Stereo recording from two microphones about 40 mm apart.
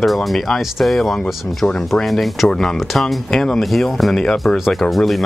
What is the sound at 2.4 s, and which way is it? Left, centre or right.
Speech, centre.